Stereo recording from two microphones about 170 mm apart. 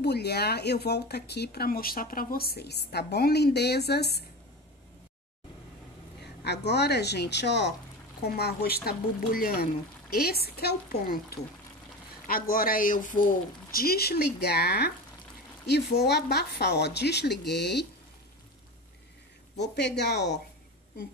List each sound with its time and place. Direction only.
0.0 s speech: 75° left (ahead or behind)
6.2 s a woman's voice: 80° left
8.2 s a man's voice: 70° left (ahead or behind)
19.5 s a woman's voice: 85° left